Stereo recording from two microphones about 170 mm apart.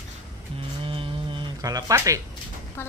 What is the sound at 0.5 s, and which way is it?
Speech, 30° right (ahead or behind).